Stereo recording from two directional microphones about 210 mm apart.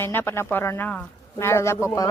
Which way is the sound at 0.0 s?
10° left (ahead or behind).